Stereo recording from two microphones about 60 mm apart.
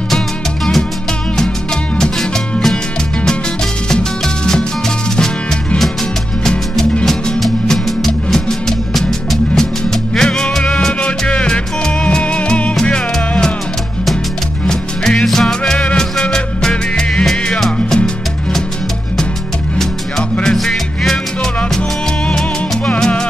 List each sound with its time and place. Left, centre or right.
6.4 s music: centre
14.7 s music: centre
20.5 s music: centre
22.8 s music: centre